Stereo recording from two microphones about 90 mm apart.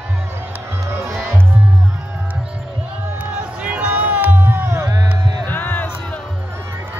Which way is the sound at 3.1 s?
15° right (ahead or behind).